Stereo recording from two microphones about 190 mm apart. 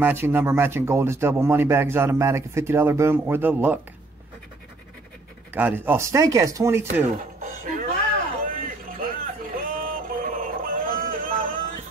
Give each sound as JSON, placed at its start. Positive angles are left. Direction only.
{"t": 0.0, "sound": "speech", "side_deg": -10}
{"t": 5.5, "sound": "speech", "side_deg": -10}
{"t": 7.2, "sound": "music", "side_deg": -45}
{"t": 8.5, "sound": "a sound", "side_deg": -45}